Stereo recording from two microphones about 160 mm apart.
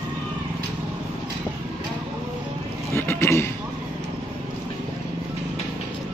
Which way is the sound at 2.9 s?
15° left (ahead or behind).